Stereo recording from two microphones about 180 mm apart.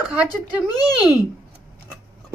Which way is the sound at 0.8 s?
20° left (ahead or behind).